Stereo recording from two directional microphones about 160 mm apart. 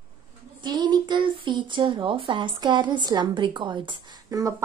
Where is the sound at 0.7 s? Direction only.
25° right (ahead or behind).